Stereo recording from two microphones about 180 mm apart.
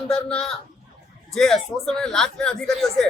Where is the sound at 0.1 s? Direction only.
5° left (ahead or behind).